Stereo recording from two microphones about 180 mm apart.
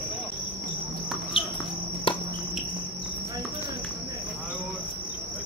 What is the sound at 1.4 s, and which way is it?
Cricket, 30° left (ahead or behind).